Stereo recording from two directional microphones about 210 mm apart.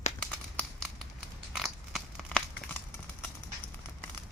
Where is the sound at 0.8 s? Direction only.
5° left (ahead or behind).